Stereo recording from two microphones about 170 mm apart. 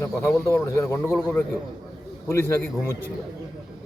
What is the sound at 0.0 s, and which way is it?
A man's voice, 15° left (ahead or behind).